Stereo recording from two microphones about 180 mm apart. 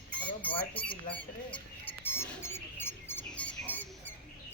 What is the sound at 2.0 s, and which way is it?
Cricket, 10° left (ahead or behind).